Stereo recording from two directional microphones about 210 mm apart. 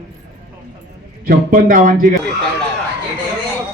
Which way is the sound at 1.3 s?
40° right (ahead or behind).